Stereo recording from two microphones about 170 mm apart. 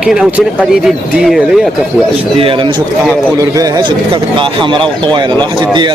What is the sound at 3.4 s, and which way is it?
A man's voice, 25° right (ahead or behind).